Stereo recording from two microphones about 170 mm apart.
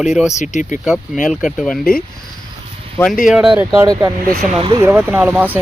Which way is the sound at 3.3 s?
5° right (ahead or behind).